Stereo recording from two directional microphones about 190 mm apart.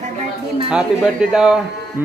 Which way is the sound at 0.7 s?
5° right (ahead or behind).